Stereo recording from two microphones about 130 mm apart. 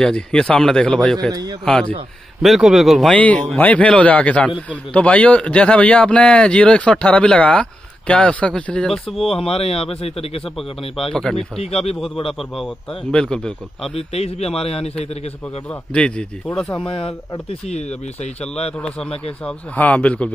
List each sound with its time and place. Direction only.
0.0 s a man's voice: 5° left (ahead or behind)
1.3 s a man's voice: 30° right (ahead or behind)
1.6 s a man's voice: 5° left (ahead or behind)
3.2 s a man's voice: 10° left (ahead or behind)
9.3 s a man's voice: 50° left (ahead or behind)
11.1 s a man's voice: 5° left (ahead or behind)
11.6 s a man's voice: 50° left (ahead or behind)
12.4 s a man's voice: centre (ahead or behind)
13.9 s a man's voice: 55° left (ahead or behind)
15.7 s a man's voice: 10° left (ahead or behind)
16.8 s a man's voice: 45° left (ahead or behind)
17.5 s speech: 60° left (ahead or behind)
18.7 s a man's voice: 5° left (ahead or behind)